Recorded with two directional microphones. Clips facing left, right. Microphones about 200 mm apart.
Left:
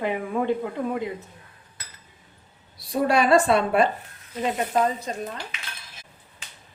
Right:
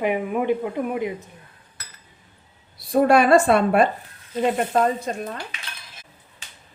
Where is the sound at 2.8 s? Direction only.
50° right (ahead or behind).